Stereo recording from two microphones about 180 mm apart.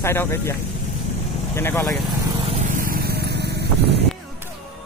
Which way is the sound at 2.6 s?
50° right (ahead or behind).